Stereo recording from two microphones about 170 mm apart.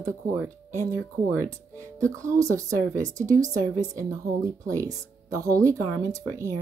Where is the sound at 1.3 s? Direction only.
15° right (ahead or behind).